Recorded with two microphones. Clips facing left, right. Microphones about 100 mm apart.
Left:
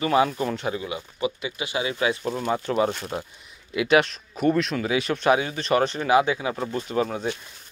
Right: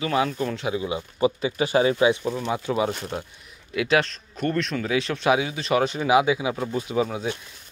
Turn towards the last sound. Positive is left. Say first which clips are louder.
# even
turn(degrees=-5)  # may be behind; listen again after turning